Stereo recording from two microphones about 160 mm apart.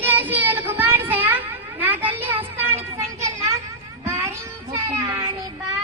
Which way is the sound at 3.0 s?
20° right (ahead or behind).